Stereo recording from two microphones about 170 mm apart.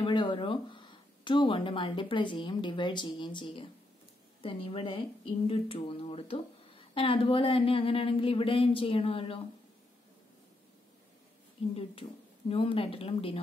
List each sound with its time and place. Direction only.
0.0 s a woman's voice: 30° left (ahead or behind)
11.7 s a woman's voice: 35° left (ahead or behind)